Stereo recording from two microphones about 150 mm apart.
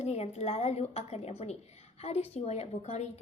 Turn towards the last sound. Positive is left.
turn(degrees=45)  # may be behind; listen again after turning